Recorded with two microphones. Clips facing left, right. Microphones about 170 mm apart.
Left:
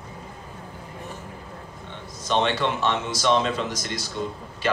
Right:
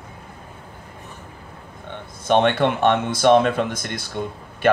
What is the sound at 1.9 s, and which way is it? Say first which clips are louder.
Speech: right 7 dB; 55° right (ahead or behind).